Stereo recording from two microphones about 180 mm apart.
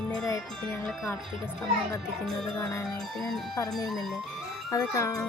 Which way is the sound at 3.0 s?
Centre (ahead or behind).